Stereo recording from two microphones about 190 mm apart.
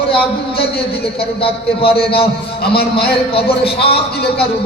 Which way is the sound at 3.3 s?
30° left (ahead or behind).